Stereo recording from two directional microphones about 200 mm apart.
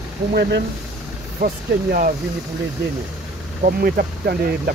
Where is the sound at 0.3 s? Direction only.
50° right (ahead or behind).